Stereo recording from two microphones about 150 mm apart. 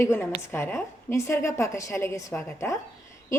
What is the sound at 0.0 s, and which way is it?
A woman's voice, 15° left (ahead or behind).